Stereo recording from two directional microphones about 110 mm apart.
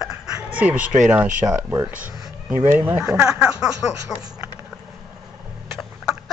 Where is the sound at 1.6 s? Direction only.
25° right (ahead or behind); by 4.3 s 5° right (ahead or behind).